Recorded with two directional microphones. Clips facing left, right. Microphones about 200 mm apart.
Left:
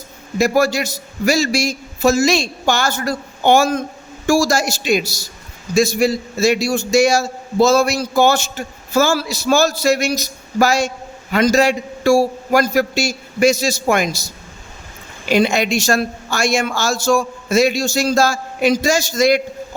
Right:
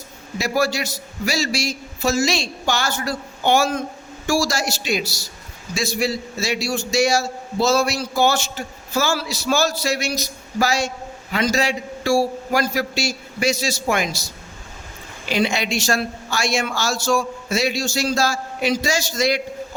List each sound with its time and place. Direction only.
0.3 s a man's voice: 50° left (ahead or behind)
15.3 s a man's voice: 45° left (ahead or behind)